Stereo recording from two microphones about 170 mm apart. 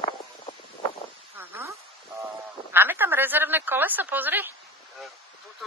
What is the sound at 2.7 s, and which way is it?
A woman's voice, 10° right (ahead or behind).